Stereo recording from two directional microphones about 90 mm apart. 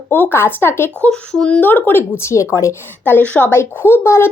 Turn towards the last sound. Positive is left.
turn(degrees=25)  # may be behind; listen again after turning